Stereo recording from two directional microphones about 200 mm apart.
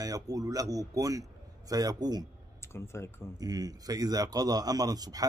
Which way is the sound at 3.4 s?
20° right (ahead or behind).